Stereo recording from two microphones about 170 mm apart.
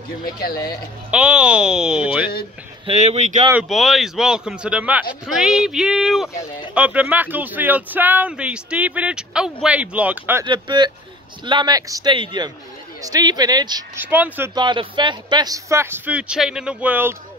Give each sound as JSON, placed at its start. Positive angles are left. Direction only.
{"t": 0.2, "sound": "speech", "side_deg": 60}
{"t": 1.1, "sound": "a man's voice", "side_deg": -5}
{"t": 2.9, "sound": "speech", "side_deg": -40}
{"t": 3.5, "sound": "a man's voice", "side_deg": 0}
{"t": 10.4, "sound": "a man's voice", "side_deg": -25}
{"t": 14.0, "sound": "speech", "side_deg": -10}
{"t": 14.5, "sound": "speech", "side_deg": -25}